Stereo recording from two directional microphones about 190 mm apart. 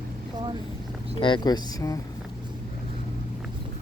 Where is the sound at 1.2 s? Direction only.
25° left (ahead or behind).